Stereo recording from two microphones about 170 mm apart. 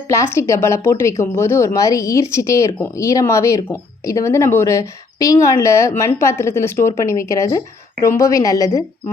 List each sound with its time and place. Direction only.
0.1 s a woman's voice: 15° left (ahead or behind)